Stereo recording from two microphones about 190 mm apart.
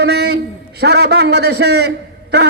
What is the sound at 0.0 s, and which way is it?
A man's voice, 60° right (ahead or behind).